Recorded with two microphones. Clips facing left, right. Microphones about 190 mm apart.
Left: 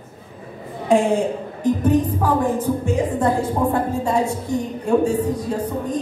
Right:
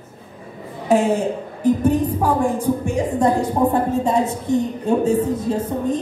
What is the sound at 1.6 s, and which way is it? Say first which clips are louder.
A woman's voice: right 1 dB; 10° right (ahead or behind).